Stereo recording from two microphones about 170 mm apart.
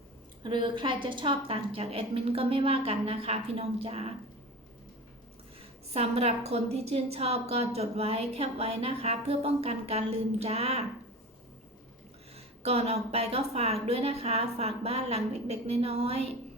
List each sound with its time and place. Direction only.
0.4 s a woman's voice: 25° right (ahead or behind)
5.9 s a woman's voice: 40° right (ahead or behind)
12.6 s a woman's voice: 40° right (ahead or behind)